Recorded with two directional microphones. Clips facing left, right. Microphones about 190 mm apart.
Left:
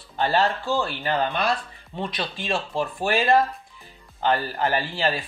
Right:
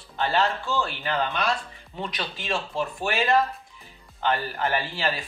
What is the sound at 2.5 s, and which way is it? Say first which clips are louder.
Speech: left 1 dB; 35° left (ahead or behind).